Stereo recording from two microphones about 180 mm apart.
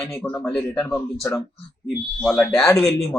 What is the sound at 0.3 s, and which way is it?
Speech, 5° left (ahead or behind).